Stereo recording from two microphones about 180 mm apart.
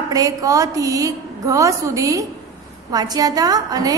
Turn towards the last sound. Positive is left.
turn(degrees=-20)  # may be behind; listen again after turning